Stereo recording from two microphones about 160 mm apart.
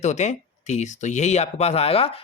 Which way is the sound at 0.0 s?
45° left (ahead or behind).